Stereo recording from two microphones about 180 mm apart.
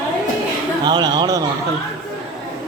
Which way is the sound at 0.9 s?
25° right (ahead or behind).